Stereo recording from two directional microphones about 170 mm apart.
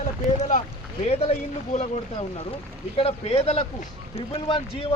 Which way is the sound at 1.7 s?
35° left (ahead or behind).